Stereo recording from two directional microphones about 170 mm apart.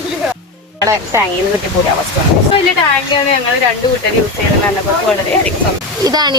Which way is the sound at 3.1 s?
30° left (ahead or behind).